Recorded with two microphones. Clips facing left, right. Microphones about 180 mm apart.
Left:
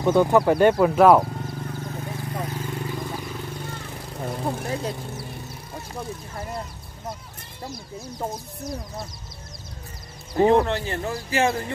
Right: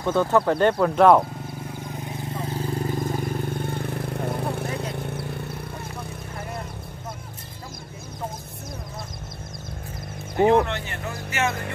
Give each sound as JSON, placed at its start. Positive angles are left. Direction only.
{"t": 0.0, "sound": "speech", "side_deg": 15}
{"t": 2.1, "sound": "vehicle", "side_deg": -30}
{"t": 10.5, "sound": "speech", "side_deg": 35}